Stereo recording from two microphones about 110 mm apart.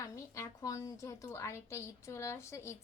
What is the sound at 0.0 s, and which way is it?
A woman's voice, 30° left (ahead or behind).